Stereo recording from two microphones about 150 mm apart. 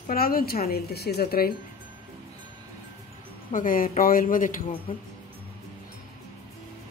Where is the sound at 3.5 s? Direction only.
70° left (ahead or behind).